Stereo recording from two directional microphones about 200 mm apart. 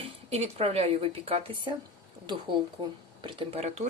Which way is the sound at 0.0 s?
30° right (ahead or behind).